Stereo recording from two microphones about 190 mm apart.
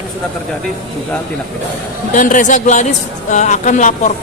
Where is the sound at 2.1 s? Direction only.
45° left (ahead or behind).